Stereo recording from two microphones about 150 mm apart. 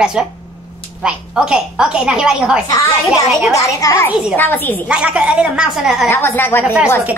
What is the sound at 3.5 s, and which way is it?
A woman's voice, 20° left (ahead or behind).